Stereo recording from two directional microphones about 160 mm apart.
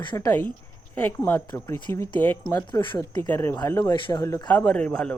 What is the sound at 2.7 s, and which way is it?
Speech, 25° left (ahead or behind).